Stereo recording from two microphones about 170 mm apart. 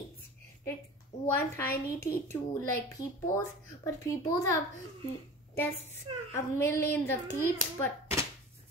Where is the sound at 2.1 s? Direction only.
15° left (ahead or behind).